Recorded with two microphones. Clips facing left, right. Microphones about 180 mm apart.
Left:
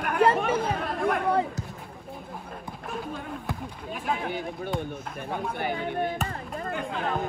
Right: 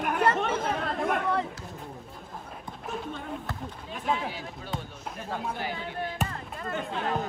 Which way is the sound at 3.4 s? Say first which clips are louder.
Left 3 dB; 5° left (ahead or behind).